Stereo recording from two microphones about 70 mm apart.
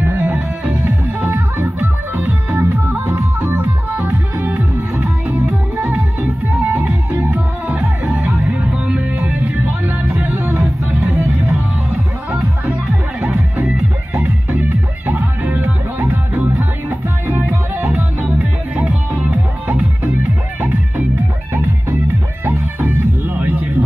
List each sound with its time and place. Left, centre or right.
0.0 s music: right
0.8 s music: right
7.2 s music: right
9.4 s music: right
10.5 s music: right
14.2 s music: right
17.8 s music: centre
22.4 s music: right